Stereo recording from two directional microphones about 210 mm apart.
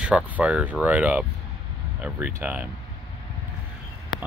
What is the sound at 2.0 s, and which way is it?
Speech, 5° right (ahead or behind).